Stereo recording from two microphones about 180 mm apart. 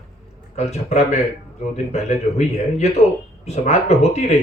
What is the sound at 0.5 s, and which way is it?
Speech, 40° left (ahead or behind).